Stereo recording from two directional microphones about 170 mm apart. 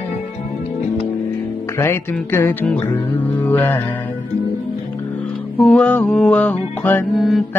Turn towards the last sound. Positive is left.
turn(degrees=0)  # may be behind; listen again after turning